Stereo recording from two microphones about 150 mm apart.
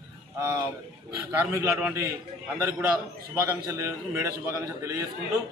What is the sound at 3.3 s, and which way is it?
A man's voice, 20° right (ahead or behind).